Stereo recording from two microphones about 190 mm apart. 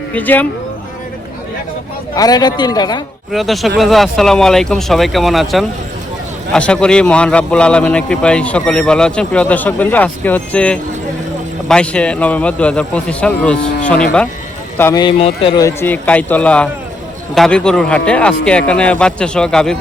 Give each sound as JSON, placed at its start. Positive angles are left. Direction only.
{"t": 0.1, "sound": "a man's voice", "side_deg": 10}
{"t": 2.1, "sound": "a man's voice", "side_deg": 20}
{"t": 3.3, "sound": "a man's voice", "side_deg": 0}
{"t": 15.0, "sound": "a man's voice", "side_deg": 25}
{"t": 15.6, "sound": "a man's voice", "side_deg": 10}